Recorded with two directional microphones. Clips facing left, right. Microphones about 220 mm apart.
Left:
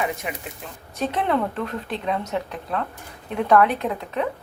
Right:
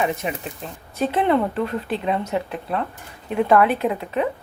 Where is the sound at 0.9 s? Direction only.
Centre (ahead or behind).